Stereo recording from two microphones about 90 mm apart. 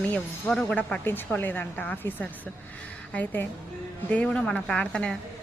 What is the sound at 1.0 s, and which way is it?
Speech, 20° left (ahead or behind).